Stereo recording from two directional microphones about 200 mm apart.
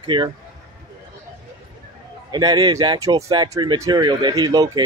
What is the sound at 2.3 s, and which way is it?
A man's voice, 20° right (ahead or behind).